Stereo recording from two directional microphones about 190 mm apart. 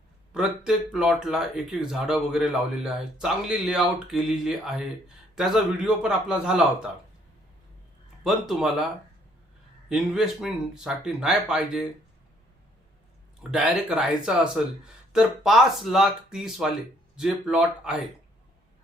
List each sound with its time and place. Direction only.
0.3 s speech: 5° right (ahead or behind)
8.2 s speech: centre (ahead or behind)
9.9 s speech: centre (ahead or behind)
13.4 s speech: 5° right (ahead or behind)